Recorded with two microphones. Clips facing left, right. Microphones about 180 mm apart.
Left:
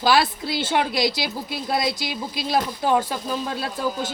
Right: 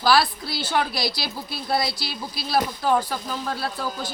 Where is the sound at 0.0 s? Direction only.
20° left (ahead or behind).